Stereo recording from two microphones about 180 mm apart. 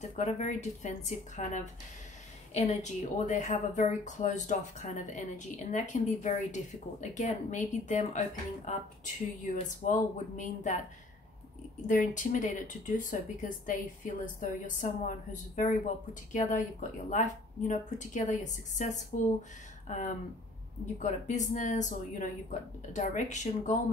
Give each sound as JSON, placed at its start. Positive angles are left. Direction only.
{"t": 0.0, "sound": "a woman's voice", "side_deg": 40}
{"t": 11.9, "sound": "speech", "side_deg": 45}